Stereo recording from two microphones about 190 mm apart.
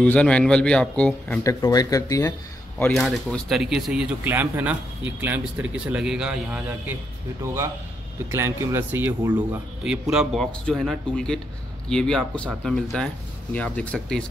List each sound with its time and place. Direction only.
0.0 s a man's voice: 5° left (ahead or behind)
1.4 s a man's voice: 15° left (ahead or behind)
2.8 s a man's voice: centre (ahead or behind)